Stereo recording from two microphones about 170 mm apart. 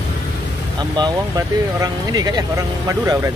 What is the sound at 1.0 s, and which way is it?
Speech, 20° right (ahead or behind).